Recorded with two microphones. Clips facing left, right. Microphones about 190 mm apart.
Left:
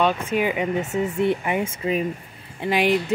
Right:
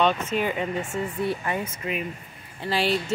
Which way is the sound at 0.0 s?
10° left (ahead or behind).